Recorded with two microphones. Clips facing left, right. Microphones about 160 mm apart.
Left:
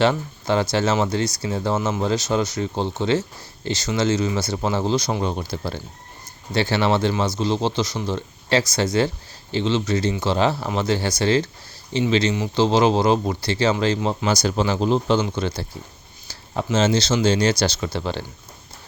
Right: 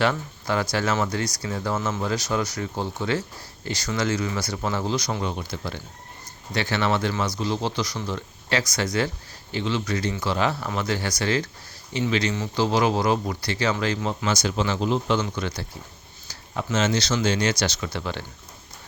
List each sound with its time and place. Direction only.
0.0 s speech: 25° left (ahead or behind)
16.7 s speech: 30° left (ahead or behind)